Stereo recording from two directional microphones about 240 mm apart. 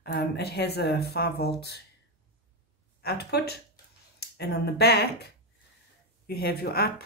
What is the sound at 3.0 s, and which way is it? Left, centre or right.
Speech, left.